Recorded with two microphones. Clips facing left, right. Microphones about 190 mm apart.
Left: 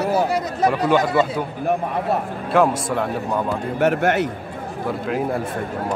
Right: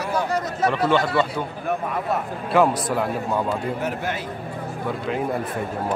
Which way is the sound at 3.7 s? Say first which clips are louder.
Left 9 dB; 70° left (ahead or behind).